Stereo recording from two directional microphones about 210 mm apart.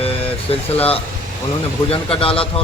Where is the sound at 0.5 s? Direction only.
25° left (ahead or behind).